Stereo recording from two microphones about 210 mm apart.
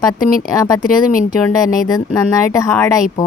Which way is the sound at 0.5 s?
15° left (ahead or behind).